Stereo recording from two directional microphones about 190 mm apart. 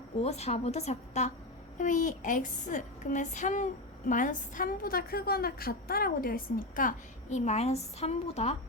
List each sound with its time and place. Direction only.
0.2 s speech: 35° left (ahead or behind)